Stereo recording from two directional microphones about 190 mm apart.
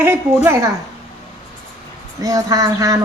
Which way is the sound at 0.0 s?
10° right (ahead or behind).